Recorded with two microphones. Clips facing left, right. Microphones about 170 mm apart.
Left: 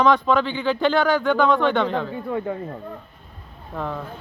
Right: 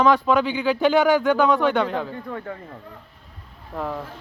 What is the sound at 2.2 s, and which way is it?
Speech, 15° left (ahead or behind).